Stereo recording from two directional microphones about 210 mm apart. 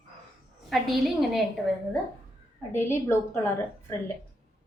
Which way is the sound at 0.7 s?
Centre (ahead or behind).